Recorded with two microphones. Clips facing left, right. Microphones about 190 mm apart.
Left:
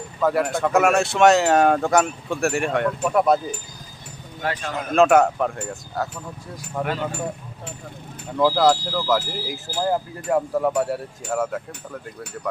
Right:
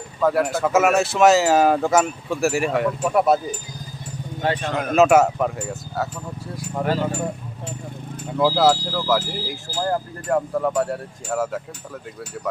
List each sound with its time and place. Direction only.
0.2 s speech: centre (ahead or behind)
4.4 s speech: 25° right (ahead or behind)
4.9 s speech: 5° right (ahead or behind)
6.8 s speech: 15° right (ahead or behind)
8.4 s speech: 5° right (ahead or behind)